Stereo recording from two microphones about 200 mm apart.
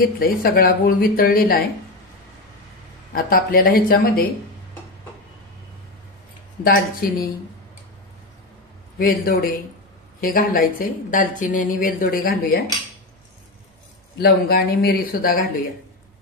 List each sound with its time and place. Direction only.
0.0 s a woman's voice: 45° left (ahead or behind)
3.3 s a woman's voice: 45° left (ahead or behind)
6.6 s a woman's voice: 45° left (ahead or behind)
8.9 s a woman's voice: 45° left (ahead or behind)
14.1 s a woman's voice: 50° left (ahead or behind)